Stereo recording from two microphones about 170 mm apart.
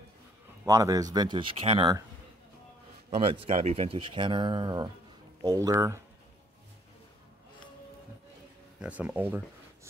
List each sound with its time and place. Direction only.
0.7 s speech: 20° right (ahead or behind)
3.2 s speech: 35° right (ahead or behind); by 6.0 s 15° right (ahead or behind)
8.8 s speech: 5° right (ahead or behind)